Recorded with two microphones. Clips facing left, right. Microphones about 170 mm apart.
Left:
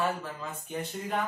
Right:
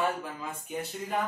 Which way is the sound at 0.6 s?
10° right (ahead or behind).